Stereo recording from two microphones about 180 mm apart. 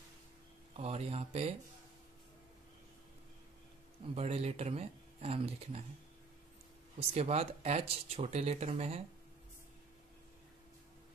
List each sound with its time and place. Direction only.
0.7 s speech: 35° right (ahead or behind)
4.1 s speech: 35° right (ahead or behind)
7.0 s speech: 35° right (ahead or behind)